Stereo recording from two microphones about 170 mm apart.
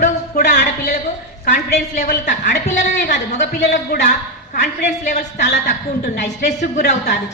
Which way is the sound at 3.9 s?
65° left (ahead or behind).